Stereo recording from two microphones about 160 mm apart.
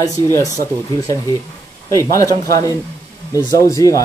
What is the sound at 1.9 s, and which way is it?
Speech, 20° left (ahead or behind).